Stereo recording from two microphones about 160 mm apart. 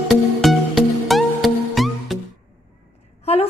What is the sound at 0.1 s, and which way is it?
Music, centre (ahead or behind).